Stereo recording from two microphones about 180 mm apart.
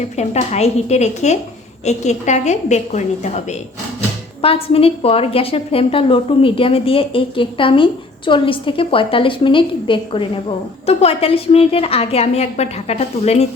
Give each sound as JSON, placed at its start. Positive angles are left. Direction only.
{"t": 0.2, "sound": "a woman's voice", "side_deg": 35}
{"t": 4.4, "sound": "a woman's voice", "side_deg": 35}